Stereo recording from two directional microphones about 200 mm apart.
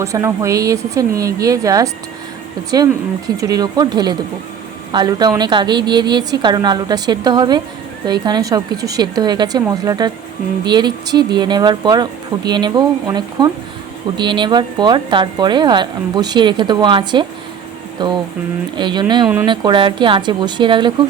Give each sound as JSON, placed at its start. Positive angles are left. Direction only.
{"t": 0.0, "sound": "speech", "side_deg": -15}
{"t": 19.2, "sound": "speech", "side_deg": -5}
{"t": 19.5, "sound": "speech", "side_deg": -25}